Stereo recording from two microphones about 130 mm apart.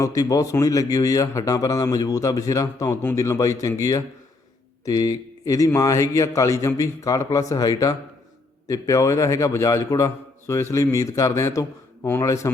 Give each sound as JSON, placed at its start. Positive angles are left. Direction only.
{"t": 0.0, "sound": "a man's voice", "side_deg": 25}